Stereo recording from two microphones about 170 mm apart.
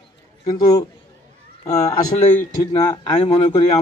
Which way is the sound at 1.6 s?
45° left (ahead or behind).